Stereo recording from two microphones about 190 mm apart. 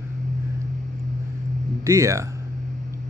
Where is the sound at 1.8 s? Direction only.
15° right (ahead or behind).